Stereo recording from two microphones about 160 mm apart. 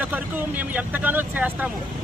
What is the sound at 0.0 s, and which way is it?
Speech, 10° right (ahead or behind).